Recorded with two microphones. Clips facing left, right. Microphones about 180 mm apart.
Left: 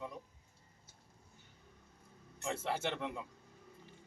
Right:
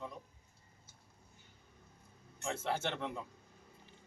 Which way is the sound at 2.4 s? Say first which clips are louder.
Even; 5° left (ahead or behind).